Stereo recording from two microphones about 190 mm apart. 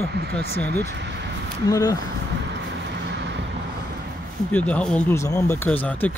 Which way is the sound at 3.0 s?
65° right (ahead or behind).